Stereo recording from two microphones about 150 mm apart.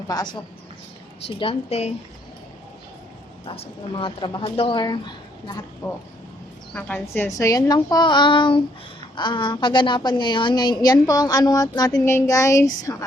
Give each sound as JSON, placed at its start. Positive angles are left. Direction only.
{"t": 0.1, "sound": "a woman's voice", "side_deg": 25}
{"t": 1.4, "sound": "speech", "side_deg": 40}
{"t": 3.4, "sound": "speech", "side_deg": 40}
{"t": 6.7, "sound": "a woman's voice", "side_deg": 10}
{"t": 7.3, "sound": "a woman's voice", "side_deg": 20}